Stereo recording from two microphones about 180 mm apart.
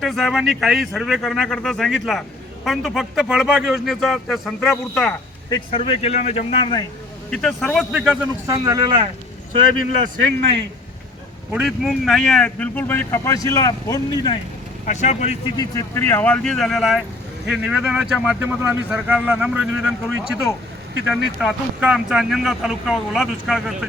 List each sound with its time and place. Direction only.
0.0 s speech: centre (ahead or behind)
5.5 s a man's voice: 30° left (ahead or behind)
7.3 s speech: 5° left (ahead or behind)
8.4 s speech: 20° right (ahead or behind)
11.5 s speech: centre (ahead or behind); by 14.3 s 20° left (ahead or behind)
14.8 s a man's voice: 40° left (ahead or behind)
15.5 s speech: 20° left (ahead or behind); by 23.7 s centre (ahead or behind)